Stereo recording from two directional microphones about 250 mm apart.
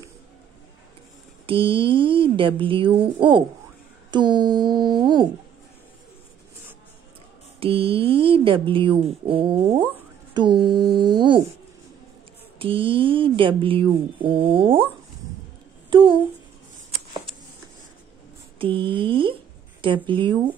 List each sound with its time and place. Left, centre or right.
1.4 s speech: right
4.1 s a sound: centre
7.6 s speech: right
12.5 s speech: right
15.9 s speech: centre
18.6 s speech: centre